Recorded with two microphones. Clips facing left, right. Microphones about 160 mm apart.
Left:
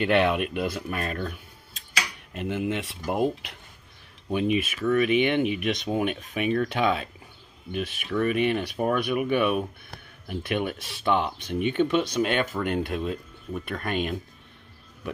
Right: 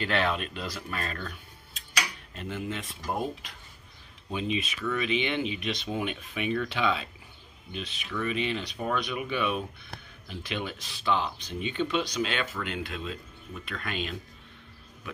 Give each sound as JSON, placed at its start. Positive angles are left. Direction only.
{"t": 0.0, "sound": "speech", "side_deg": 60}
{"t": 2.4, "sound": "speech", "side_deg": 60}
{"t": 4.3, "sound": "speech", "side_deg": 60}